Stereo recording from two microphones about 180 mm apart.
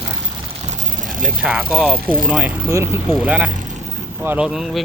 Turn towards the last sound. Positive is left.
turn(degrees=0)  # may be behind; listen again after turning